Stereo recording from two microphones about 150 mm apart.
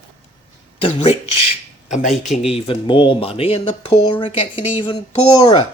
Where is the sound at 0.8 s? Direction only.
40° left (ahead or behind).